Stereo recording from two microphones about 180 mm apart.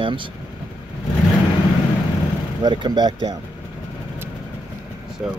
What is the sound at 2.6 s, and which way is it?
Speech, 25° right (ahead or behind).